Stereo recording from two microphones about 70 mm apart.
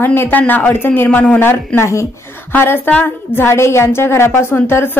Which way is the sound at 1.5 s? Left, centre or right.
Left.